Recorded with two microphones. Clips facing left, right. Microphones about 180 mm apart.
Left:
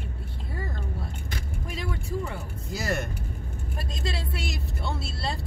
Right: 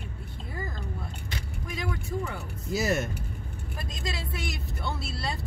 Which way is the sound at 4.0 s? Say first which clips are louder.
Left 1 dB; 25° left (ahead or behind).